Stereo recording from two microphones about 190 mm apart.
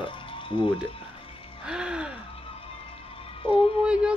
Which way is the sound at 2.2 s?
30° left (ahead or behind).